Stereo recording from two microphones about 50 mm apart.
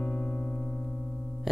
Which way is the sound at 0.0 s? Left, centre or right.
Left.